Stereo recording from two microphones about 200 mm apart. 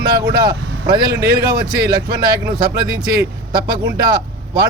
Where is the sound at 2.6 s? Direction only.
20° right (ahead or behind).